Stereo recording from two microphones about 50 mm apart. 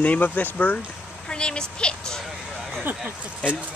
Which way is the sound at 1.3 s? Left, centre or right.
Centre.